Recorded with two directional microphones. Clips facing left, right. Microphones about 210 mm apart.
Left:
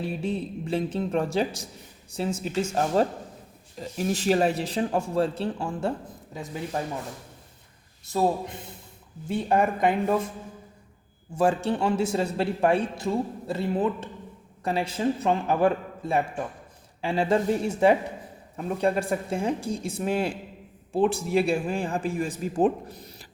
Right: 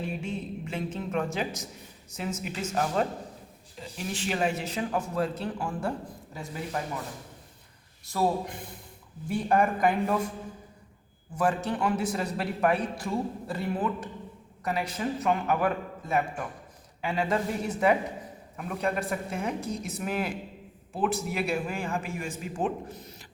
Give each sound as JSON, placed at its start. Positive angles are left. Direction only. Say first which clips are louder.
{"t": 0.0, "sound": "a man's voice", "louder": "left 4 dB", "side_deg": 35}
{"t": 8.1, "sound": "a man's voice", "louder": "left 3 dB", "side_deg": 25}
{"t": 11.3, "sound": "a man's voice", "louder": "left 4 dB", "side_deg": 30}